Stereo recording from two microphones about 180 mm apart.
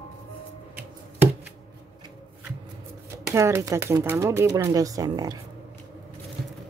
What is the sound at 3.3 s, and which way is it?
A woman's voice, 15° right (ahead or behind).